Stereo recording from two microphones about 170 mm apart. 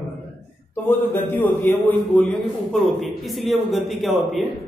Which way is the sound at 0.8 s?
15° left (ahead or behind).